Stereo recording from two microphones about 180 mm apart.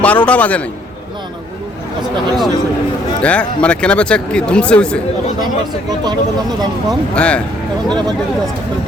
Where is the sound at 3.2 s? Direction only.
5° left (ahead or behind).